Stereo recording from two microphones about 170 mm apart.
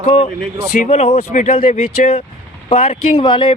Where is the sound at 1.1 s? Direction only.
50° left (ahead or behind).